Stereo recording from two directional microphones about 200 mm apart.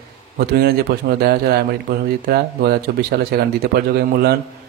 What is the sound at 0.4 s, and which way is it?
Speech, 50° right (ahead or behind).